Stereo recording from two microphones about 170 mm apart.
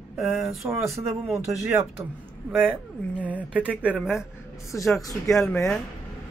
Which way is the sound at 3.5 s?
10° right (ahead or behind).